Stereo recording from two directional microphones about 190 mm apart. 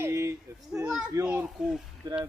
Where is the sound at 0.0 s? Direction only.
15° right (ahead or behind).